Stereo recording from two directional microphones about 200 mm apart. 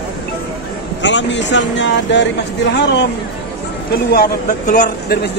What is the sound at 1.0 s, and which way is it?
Speech, 65° left (ahead or behind).